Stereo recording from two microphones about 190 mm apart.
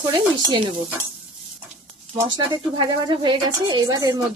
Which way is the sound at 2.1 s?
20° right (ahead or behind).